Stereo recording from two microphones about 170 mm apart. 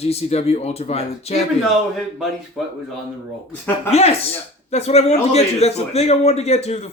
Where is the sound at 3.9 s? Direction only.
35° left (ahead or behind).